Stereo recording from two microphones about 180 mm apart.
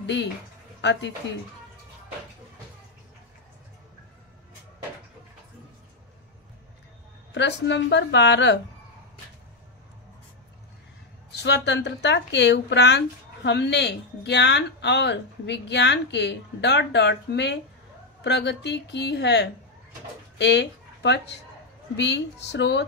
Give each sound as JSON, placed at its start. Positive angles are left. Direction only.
{"t": 0.0, "sound": "speech", "side_deg": 80}
{"t": 7.3, "sound": "speech", "side_deg": 75}
{"t": 11.3, "sound": "speech", "side_deg": 70}